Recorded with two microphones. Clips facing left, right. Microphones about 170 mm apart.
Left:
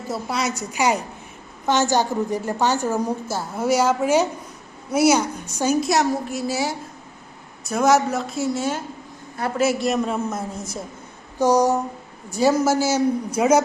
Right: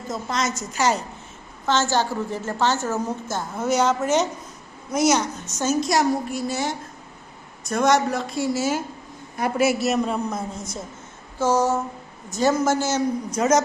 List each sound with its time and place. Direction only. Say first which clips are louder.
0.1 s a woman's voice: left 1 dB; 10° left (ahead or behind)
11.3 s a woman's voice: left 3 dB; 15° left (ahead or behind)